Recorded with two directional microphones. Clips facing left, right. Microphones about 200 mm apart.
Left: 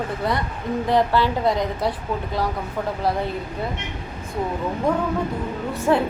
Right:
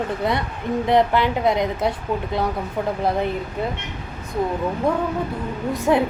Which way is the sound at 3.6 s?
20° right (ahead or behind).